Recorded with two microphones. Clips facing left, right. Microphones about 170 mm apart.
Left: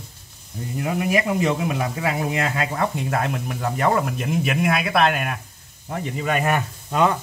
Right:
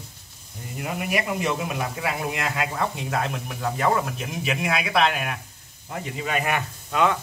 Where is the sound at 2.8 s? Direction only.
55° left (ahead or behind); by 7.1 s 40° left (ahead or behind).